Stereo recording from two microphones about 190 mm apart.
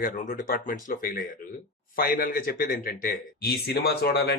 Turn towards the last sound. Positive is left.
turn(degrees=60)  # may be behind; listen again after turning